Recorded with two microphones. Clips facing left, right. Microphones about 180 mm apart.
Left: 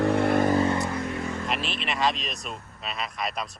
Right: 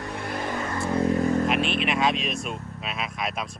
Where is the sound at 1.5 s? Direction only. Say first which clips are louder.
Right 6 dB; centre (ahead or behind).